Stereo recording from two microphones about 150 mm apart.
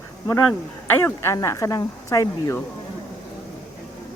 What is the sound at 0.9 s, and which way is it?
Speech, 15° left (ahead or behind).